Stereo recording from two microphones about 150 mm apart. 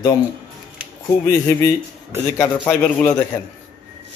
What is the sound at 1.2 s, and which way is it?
A man's voice, 20° left (ahead or behind).